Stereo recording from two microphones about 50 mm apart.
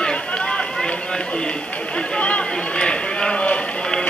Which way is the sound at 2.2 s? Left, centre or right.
Left.